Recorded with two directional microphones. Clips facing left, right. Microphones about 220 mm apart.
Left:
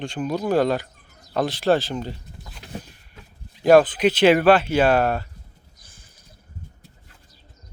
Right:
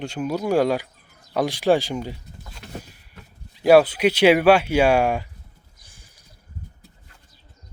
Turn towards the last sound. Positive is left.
turn(degrees=-15)  # may be behind; listen again after turning